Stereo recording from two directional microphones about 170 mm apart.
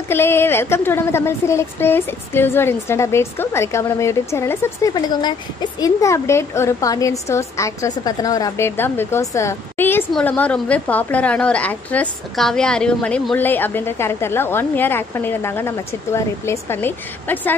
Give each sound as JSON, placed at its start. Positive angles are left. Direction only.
{"t": 0.1, "sound": "speech", "side_deg": 15}